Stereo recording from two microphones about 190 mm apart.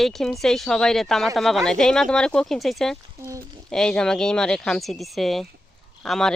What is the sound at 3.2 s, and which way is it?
Speech, 15° right (ahead or behind).